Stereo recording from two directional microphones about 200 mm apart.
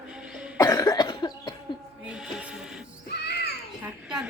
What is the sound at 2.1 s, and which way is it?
Music, 5° right (ahead or behind).